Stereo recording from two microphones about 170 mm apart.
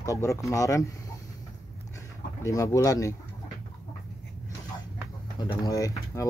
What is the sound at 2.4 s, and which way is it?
Speech, 20° left (ahead or behind).